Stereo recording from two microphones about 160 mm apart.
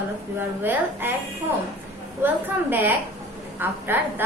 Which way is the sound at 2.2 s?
10° right (ahead or behind).